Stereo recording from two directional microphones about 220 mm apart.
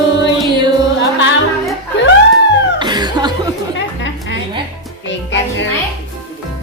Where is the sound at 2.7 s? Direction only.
20° right (ahead or behind).